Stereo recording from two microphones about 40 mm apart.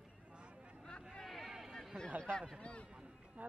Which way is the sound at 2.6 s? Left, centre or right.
Left.